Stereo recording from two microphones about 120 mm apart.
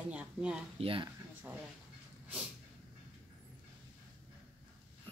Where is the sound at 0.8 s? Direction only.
50° right (ahead or behind).